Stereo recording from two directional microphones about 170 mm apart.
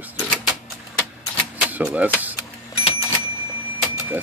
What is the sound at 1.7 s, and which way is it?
Speech, 5° right (ahead or behind).